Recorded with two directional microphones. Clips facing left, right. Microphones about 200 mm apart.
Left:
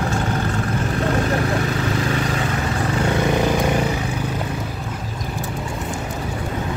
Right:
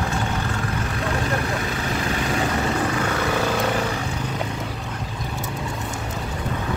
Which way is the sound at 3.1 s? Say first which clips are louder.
Left 4 dB; 20° left (ahead or behind).